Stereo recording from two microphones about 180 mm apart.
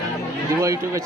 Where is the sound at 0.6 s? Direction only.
15° right (ahead or behind).